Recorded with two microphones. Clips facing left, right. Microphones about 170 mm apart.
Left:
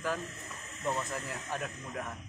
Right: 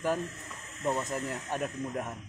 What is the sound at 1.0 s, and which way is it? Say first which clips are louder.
A man's voice: right 4 dB; 20° right (ahead or behind).